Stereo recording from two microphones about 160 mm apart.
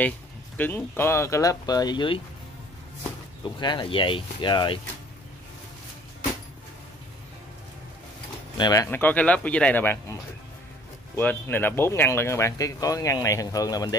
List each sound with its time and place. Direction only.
0.6 s speech: 10° left (ahead or behind); by 2.2 s 30° left (ahead or behind)
3.5 s speech: 30° left (ahead or behind)
8.5 s speech: 25° left (ahead or behind)
8.8 s speech: 10° left (ahead or behind)
11.1 s speech: 10° left (ahead or behind)